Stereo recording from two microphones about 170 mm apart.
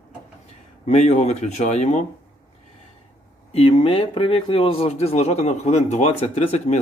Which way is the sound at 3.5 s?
35° left (ahead or behind).